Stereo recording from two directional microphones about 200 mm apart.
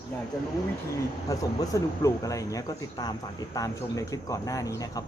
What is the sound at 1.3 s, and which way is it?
A man's voice, 15° left (ahead or behind).